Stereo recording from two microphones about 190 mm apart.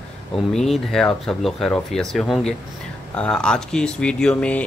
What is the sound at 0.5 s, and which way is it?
Speech, centre (ahead or behind).